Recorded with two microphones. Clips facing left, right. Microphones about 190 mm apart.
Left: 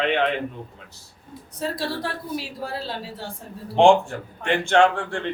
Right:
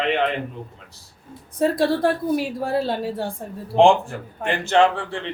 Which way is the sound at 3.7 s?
Centre (ahead or behind).